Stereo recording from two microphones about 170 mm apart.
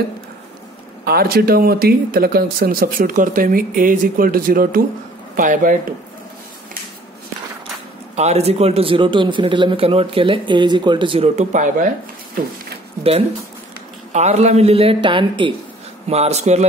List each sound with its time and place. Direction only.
1.0 s speech: 65° right (ahead or behind)
8.2 s speech: 40° right (ahead or behind)
14.1 s speech: 40° right (ahead or behind)
16.1 s speech: 40° right (ahead or behind)